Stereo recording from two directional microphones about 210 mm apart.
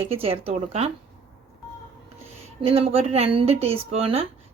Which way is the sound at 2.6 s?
25° right (ahead or behind).